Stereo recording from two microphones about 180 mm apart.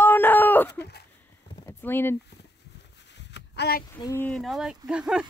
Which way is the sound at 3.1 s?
75° left (ahead or behind).